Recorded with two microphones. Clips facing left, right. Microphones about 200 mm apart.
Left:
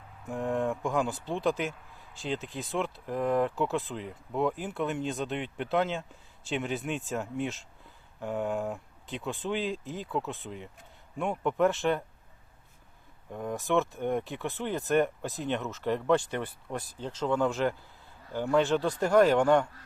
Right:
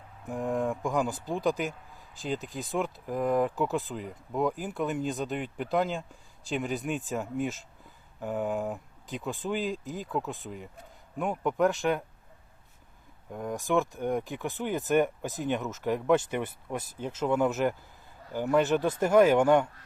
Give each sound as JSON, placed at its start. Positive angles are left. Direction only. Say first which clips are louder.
{"t": 0.3, "sound": "speech", "louder": "even", "side_deg": 0}
{"t": 13.3, "sound": "speech", "louder": "even", "side_deg": 0}
{"t": 16.1, "sound": "speech", "louder": "right 1 dB", "side_deg": -20}
{"t": 16.7, "sound": "speech", "louder": "right 1 dB", "side_deg": -5}
{"t": 18.8, "sound": "speech", "louder": "right 2 dB", "side_deg": -20}
{"t": 19.1, "sound": "speech", "louder": "right 1 dB", "side_deg": -5}